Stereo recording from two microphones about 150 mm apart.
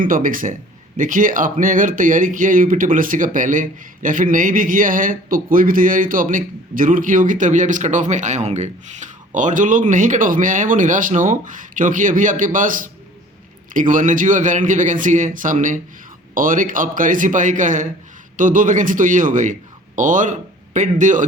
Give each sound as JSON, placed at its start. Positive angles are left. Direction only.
{"t": 0.0, "sound": "speech", "side_deg": -65}